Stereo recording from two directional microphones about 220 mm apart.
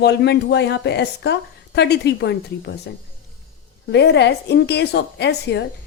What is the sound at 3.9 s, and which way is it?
Speech, 50° left (ahead or behind).